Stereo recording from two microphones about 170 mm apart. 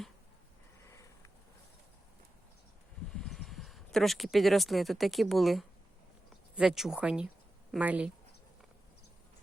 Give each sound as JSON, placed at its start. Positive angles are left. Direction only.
{"t": 0.9, "sound": "sniff", "side_deg": 20}
{"t": 3.2, "sound": "speech", "side_deg": 0}